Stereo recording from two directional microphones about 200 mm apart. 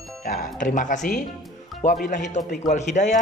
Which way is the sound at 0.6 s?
40° left (ahead or behind).